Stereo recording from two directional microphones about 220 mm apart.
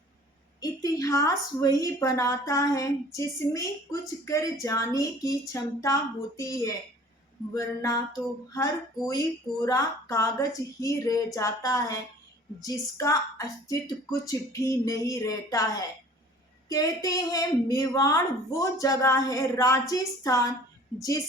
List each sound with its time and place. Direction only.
0.6 s a woman's voice: 15° left (ahead or behind)